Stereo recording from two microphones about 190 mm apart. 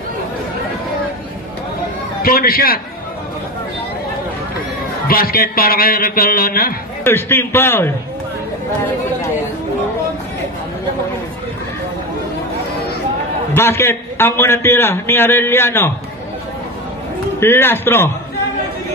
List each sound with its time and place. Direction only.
2.2 s a man's voice: 50° left (ahead or behind)
5.0 s a man's voice: 50° left (ahead or behind)
7.1 s a man's voice: 10° left (ahead or behind)
13.5 s a man's voice: 15° left (ahead or behind)
17.4 s a man's voice: 10° left (ahead or behind)